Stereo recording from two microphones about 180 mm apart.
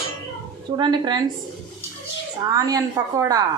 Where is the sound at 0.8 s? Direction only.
25° right (ahead or behind).